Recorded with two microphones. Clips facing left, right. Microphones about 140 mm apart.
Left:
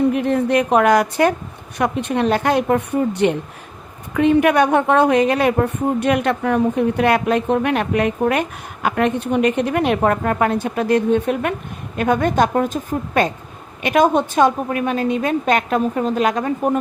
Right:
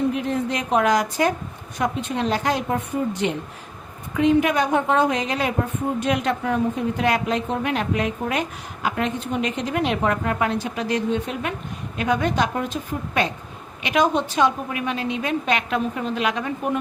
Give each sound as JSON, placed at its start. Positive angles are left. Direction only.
{"t": 0.1, "sound": "a woman's voice", "side_deg": 60}